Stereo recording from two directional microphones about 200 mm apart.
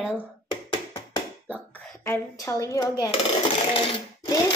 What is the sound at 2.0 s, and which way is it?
Speech, 15° left (ahead or behind).